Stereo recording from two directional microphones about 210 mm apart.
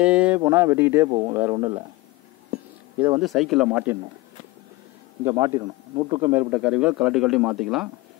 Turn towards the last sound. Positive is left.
turn(degrees=-5)  # may be behind; listen again after turning